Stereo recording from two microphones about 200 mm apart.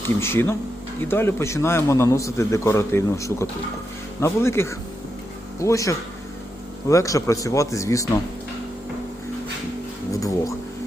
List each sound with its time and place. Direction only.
0.0 s a man's voice: 10° left (ahead or behind)
10.1 s music: 15° left (ahead or behind)